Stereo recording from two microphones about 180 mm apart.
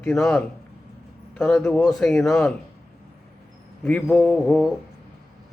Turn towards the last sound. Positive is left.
turn(degrees=0)  # may be behind; listen again after turning